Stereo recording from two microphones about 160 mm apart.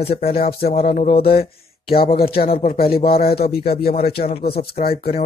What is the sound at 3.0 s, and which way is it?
Speech, 40° left (ahead or behind).